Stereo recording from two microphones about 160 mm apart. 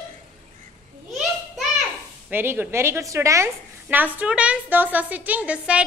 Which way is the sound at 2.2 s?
15° right (ahead or behind).